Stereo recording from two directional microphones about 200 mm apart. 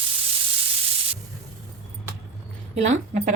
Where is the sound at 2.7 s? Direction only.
35° right (ahead or behind).